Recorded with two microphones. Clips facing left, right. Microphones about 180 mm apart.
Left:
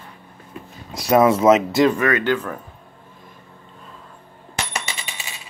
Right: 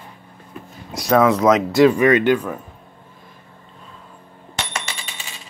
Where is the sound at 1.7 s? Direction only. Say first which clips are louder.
Right 3 dB; 5° right (ahead or behind).